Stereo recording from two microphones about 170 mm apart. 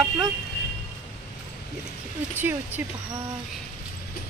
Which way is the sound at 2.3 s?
10° right (ahead or behind).